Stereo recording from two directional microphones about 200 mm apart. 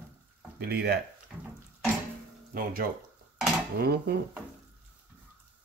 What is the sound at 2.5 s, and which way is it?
Speech, 45° right (ahead or behind).